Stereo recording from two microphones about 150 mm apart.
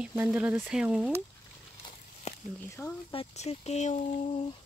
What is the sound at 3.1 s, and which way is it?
Speech, 40° left (ahead or behind).